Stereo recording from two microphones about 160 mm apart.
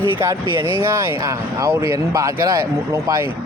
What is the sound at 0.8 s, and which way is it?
Speech, 15° right (ahead or behind).